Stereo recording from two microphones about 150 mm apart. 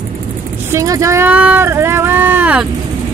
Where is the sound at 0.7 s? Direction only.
20° right (ahead or behind).